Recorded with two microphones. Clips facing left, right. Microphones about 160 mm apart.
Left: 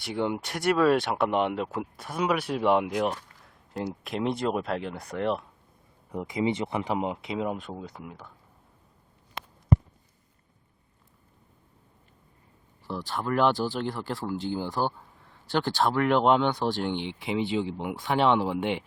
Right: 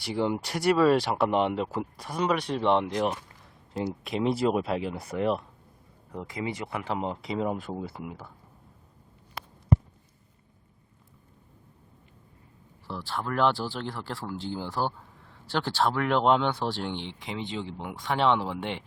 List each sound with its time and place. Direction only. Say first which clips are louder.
0.0 s speech: right 1 dB; centre (ahead or behind)
6.1 s speech: left 6 dB; 15° left (ahead or behind)
7.2 s speech: right 1 dB; centre (ahead or behind)
12.9 s speech: left 3 dB; centre (ahead or behind)